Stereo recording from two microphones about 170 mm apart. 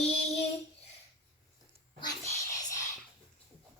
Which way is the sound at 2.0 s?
25° left (ahead or behind).